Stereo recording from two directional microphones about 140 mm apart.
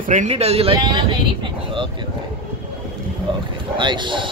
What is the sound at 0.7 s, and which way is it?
Speech, 30° right (ahead or behind).